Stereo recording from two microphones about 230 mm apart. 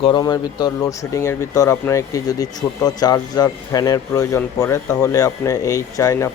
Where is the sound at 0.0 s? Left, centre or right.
Centre.